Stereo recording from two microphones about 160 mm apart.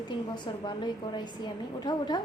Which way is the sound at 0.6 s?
25° left (ahead or behind).